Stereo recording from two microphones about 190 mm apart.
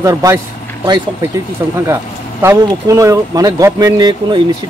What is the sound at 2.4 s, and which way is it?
Speech, 15° right (ahead or behind).